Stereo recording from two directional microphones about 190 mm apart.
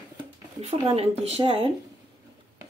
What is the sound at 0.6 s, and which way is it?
Speech, 35° right (ahead or behind).